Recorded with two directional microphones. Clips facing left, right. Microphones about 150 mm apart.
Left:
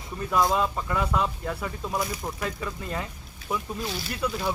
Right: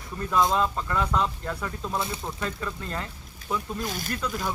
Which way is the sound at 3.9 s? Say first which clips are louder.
Even; 50° right (ahead or behind).